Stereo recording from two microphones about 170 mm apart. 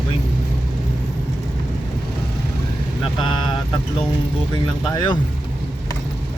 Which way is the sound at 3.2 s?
30° left (ahead or behind).